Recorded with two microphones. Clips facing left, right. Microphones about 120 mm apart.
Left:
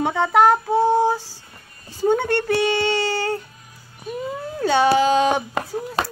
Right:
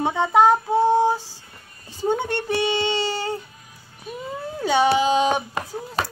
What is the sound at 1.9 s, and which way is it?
Child singing, 15° right (ahead or behind).